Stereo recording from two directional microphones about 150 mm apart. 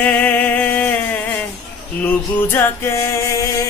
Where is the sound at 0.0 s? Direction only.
10° left (ahead or behind).